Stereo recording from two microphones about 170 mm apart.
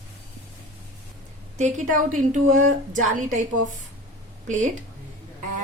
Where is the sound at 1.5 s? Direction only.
50° right (ahead or behind).